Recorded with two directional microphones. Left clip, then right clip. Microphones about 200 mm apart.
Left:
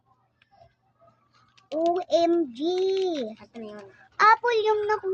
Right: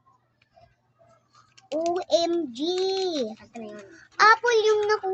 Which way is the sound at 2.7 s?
20° left (ahead or behind).